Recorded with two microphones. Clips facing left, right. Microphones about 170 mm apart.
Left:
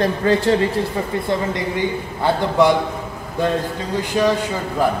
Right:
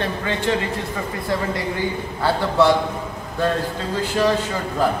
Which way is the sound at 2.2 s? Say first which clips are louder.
Left 2 dB; 15° left (ahead or behind).